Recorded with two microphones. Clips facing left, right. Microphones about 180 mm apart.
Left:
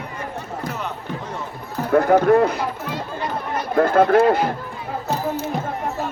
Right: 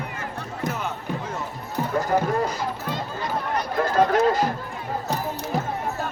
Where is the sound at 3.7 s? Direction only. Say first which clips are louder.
Left 6 dB; 55° left (ahead or behind).